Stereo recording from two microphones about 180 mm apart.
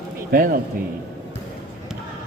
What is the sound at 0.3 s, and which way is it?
Speech, 55° right (ahead or behind).